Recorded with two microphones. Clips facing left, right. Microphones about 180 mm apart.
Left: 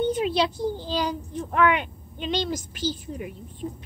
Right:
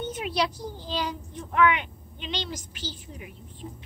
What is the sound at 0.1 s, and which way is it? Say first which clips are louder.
A child's voice: left 5 dB; 30° left (ahead or behind).